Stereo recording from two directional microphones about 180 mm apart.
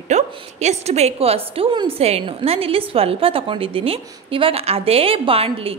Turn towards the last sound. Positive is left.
turn(degrees=-30)  # may be behind; listen again after turning